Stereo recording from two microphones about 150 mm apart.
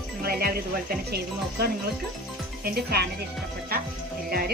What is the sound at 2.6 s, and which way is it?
Speech, 90° right.